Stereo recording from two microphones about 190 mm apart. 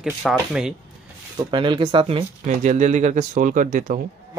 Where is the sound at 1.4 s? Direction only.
25° right (ahead or behind); by 4.0 s 45° right (ahead or behind).